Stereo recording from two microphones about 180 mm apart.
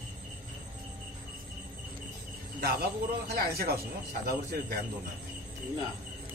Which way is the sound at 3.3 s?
60° right (ahead or behind).